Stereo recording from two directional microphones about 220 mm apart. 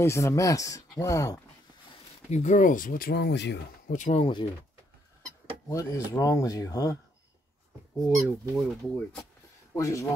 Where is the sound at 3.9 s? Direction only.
35° left (ahead or behind).